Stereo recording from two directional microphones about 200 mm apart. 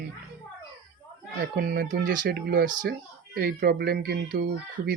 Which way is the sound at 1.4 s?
50° right (ahead or behind).